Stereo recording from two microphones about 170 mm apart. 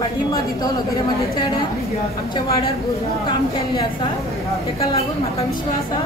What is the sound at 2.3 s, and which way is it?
A woman's voice, 25° left (ahead or behind).